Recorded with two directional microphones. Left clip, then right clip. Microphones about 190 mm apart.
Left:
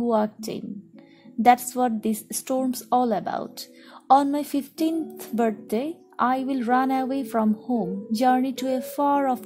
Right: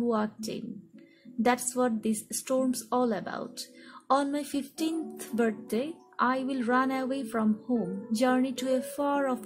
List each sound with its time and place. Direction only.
0.0 s speech: 35° left (ahead or behind)